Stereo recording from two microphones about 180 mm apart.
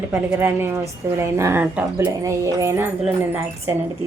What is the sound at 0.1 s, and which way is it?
A woman's voice, 15° right (ahead or behind).